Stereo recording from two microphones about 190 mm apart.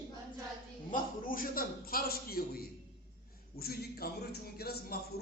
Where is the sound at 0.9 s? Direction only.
50° left (ahead or behind).